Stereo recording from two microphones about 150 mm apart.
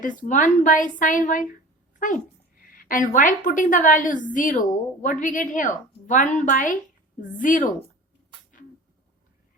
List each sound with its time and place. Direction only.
0.2 s a woman's voice: 60° left (ahead or behind)
2.0 s a sound: 60° left (ahead or behind)
3.2 s a woman's voice: 60° left (ahead or behind)